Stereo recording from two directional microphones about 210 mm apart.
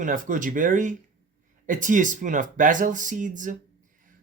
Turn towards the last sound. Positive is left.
turn(degrees=-40)  # may be behind; listen again after turning